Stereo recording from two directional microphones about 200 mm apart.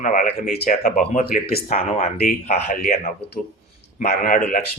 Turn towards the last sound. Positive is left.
turn(degrees=45)  # may be behind; listen again after turning